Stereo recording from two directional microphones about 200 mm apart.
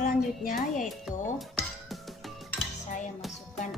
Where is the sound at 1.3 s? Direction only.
Centre (ahead or behind).